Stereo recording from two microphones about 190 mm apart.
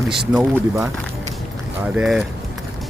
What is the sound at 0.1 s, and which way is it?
Speech, 5° right (ahead or behind).